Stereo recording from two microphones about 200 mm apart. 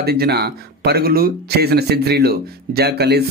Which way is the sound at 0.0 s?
50° right (ahead or behind).